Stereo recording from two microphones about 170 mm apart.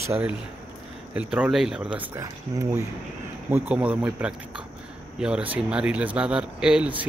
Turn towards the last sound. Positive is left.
turn(degrees=-5)  # may be behind; listen again after turning